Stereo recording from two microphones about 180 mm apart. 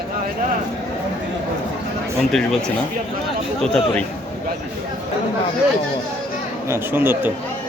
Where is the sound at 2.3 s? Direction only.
Centre (ahead or behind).